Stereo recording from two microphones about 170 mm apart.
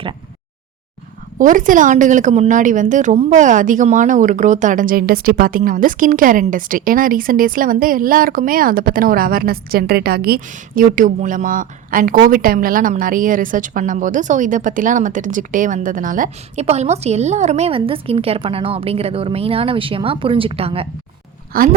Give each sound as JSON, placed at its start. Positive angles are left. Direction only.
{"t": 1.4, "sound": "a woman's voice", "side_deg": -50}
{"t": 21.5, "sound": "speech", "side_deg": -55}